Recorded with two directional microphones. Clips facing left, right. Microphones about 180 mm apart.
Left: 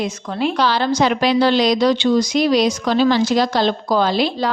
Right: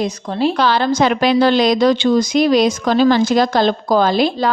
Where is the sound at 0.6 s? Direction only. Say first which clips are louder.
Even; 55° right (ahead or behind).